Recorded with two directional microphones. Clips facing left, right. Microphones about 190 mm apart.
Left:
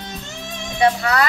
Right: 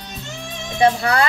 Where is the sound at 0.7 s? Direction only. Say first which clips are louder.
Right 1 dB; 30° right (ahead or behind).